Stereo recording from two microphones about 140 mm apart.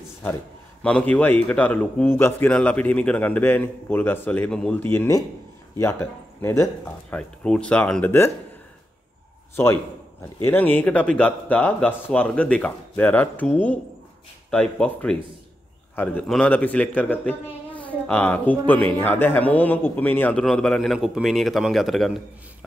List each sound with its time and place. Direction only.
0.8 s a man's voice: 10° left (ahead or behind)
9.6 s a man's voice: 15° left (ahead or behind); by 22.2 s centre (ahead or behind)